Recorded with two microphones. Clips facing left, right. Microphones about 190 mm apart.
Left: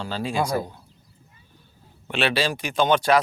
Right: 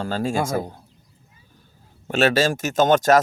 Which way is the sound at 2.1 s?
45° right (ahead or behind).